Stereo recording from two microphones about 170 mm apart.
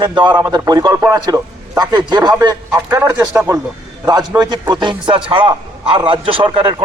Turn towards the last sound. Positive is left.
turn(degrees=-25)  # may be behind; listen again after turning